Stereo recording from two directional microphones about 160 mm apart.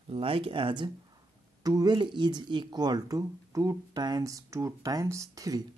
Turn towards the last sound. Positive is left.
turn(degrees=-20)  # may be behind; listen again after turning